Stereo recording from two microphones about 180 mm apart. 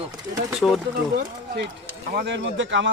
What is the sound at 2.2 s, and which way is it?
Speech, 80° right.